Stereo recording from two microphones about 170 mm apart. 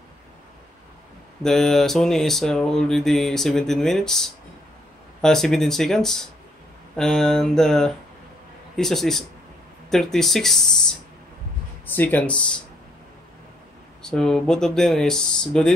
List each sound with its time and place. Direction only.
1.4 s speech: 5° left (ahead or behind)
11.8 s speech: 10° left (ahead or behind)
14.0 s speech: 5° left (ahead or behind)